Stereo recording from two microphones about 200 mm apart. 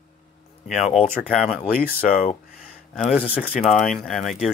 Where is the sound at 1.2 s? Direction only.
5° left (ahead or behind).